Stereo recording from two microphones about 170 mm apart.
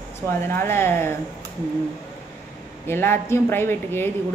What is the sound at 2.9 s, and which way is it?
A woman's voice, 15° left (ahead or behind).